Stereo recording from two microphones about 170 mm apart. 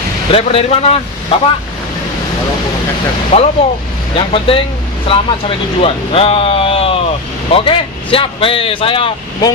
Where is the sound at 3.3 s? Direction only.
40° left (ahead or behind).